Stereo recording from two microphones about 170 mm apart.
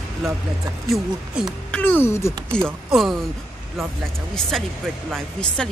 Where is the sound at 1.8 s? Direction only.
15° left (ahead or behind).